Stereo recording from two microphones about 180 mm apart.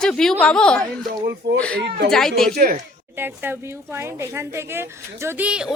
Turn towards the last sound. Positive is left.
turn(degrees=-5)  # may be behind; listen again after turning